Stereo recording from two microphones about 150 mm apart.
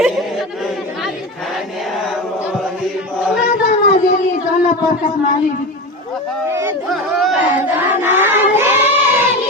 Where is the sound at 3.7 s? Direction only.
50° left (ahead or behind).